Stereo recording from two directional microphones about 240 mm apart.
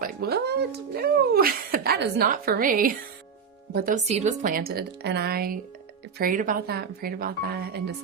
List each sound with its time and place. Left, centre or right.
0.0 s speech: right